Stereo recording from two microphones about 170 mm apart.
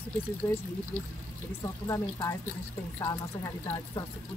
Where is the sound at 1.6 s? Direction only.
20° left (ahead or behind).